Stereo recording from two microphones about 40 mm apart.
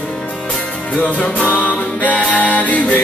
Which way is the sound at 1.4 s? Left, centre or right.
Left.